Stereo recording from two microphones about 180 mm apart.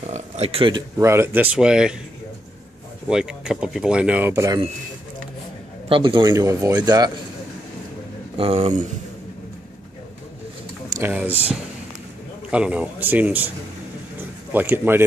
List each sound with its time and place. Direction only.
0.0 s a sound: 35° right (ahead or behind)
0.9 s speech: 15° right (ahead or behind)
3.1 s speech: 5° right (ahead or behind)
5.9 s speech: 30° right (ahead or behind)
8.4 s speech: 35° right (ahead or behind)
10.9 s speech: 10° right (ahead or behind)
12.4 s speech: 5° right (ahead or behind)
14.5 s speech: 10° right (ahead or behind)